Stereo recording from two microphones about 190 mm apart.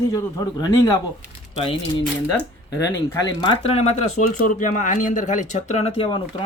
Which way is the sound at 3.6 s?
30° left (ahead or behind).